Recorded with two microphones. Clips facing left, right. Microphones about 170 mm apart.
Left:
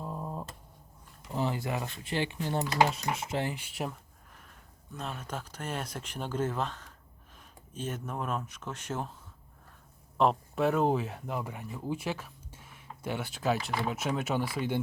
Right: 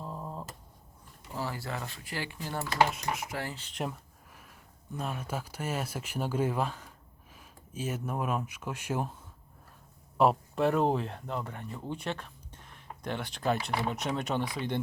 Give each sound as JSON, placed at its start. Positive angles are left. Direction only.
{"t": 0.0, "sound": "a sound", "side_deg": 10}
{"t": 1.3, "sound": "speech", "side_deg": 20}
{"t": 4.9, "sound": "speech", "side_deg": -10}
{"t": 10.2, "sound": "speech", "side_deg": -5}